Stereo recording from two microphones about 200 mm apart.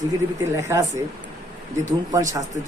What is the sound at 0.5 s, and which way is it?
Speech, 15° right (ahead or behind).